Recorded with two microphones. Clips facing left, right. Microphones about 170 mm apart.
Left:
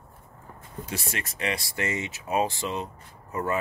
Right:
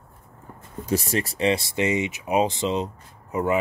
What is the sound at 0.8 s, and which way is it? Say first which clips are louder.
Speech: right 11 dB; 40° right (ahead or behind).